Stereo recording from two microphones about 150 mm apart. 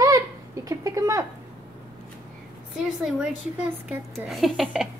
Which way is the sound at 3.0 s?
5° right (ahead or behind).